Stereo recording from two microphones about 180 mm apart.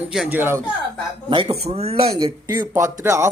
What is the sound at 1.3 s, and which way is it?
Speech, 25° right (ahead or behind).